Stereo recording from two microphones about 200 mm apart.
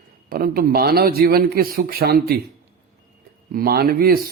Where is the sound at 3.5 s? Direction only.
50° right (ahead or behind).